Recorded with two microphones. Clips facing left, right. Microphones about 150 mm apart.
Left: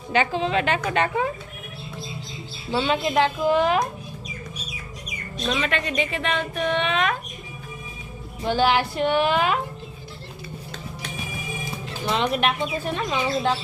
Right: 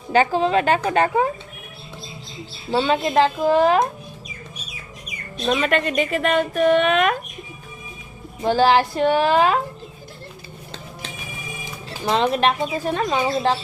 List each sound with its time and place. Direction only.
0.1 s speech: 40° right (ahead or behind)
2.8 s speech: 40° right (ahead or behind)
5.5 s speech: 50° right (ahead or behind)
8.4 s speech: 40° right (ahead or behind)
11.9 s speech: 35° right (ahead or behind)